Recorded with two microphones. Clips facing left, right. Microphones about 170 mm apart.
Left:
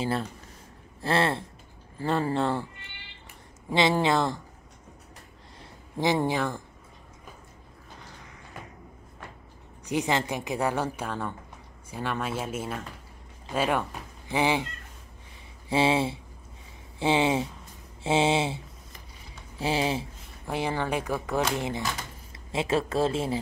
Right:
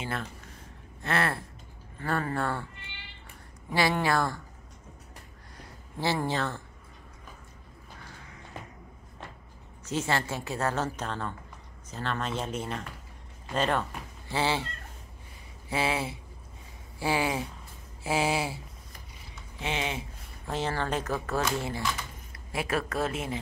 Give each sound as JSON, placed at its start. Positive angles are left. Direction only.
{"t": 1.0, "sound": "speech", "side_deg": 25}
{"t": 3.7, "sound": "speech", "side_deg": 20}
{"t": 5.9, "sound": "a woman's voice", "side_deg": 15}
{"t": 9.8, "sound": "a woman's voice", "side_deg": 15}
{"t": 15.7, "sound": "speech", "side_deg": 30}
{"t": 19.6, "sound": "speech", "side_deg": 35}
{"t": 20.4, "sound": "a woman's voice", "side_deg": 10}